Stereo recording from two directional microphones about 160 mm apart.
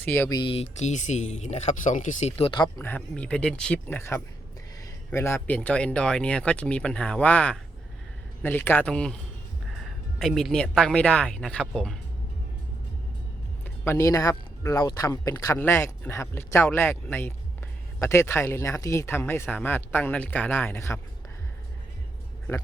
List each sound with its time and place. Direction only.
0.0 s speech: 15° left (ahead or behind)
0.3 s speech: 35° left (ahead or behind)
2.7 s speech: 10° left (ahead or behind)
10.2 s speech: centre (ahead or behind)
13.7 s speech: 15° left (ahead or behind)